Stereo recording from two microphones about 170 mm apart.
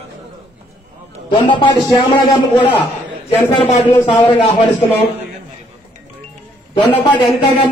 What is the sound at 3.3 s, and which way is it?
Speech, 15° left (ahead or behind).